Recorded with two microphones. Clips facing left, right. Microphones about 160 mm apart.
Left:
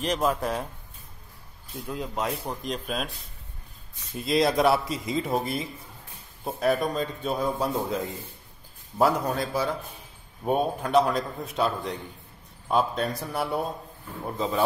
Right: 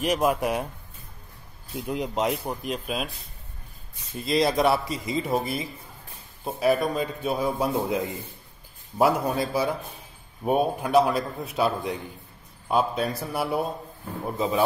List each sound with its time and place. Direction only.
0.0 s a man's voice: 10° right (ahead or behind)
1.8 s speech: 20° right (ahead or behind)
2.4 s a man's voice: 5° right (ahead or behind)
4.2 s a man's voice: centre (ahead or behind)